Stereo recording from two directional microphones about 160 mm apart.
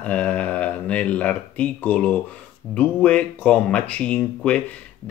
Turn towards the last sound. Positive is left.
turn(degrees=10)  # may be behind; listen again after turning